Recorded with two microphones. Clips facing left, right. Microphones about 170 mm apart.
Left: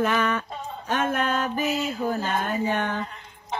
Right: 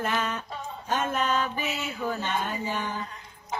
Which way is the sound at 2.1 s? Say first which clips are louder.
Left 4 dB; 55° left (ahead or behind).